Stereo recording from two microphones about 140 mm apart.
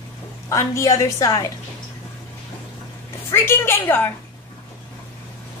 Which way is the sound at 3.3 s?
15° left (ahead or behind).